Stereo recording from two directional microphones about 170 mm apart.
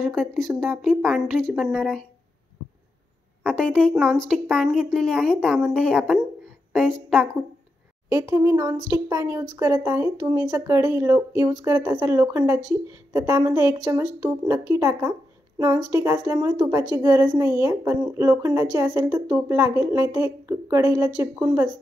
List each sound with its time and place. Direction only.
0.0 s speech: centre (ahead or behind)
3.4 s speech: 5° left (ahead or behind)
8.1 s a woman's voice: 20° right (ahead or behind)